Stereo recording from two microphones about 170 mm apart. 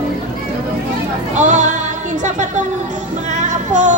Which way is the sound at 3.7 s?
45° right (ahead or behind).